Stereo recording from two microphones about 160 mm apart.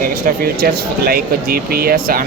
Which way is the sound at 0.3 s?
70° right (ahead or behind).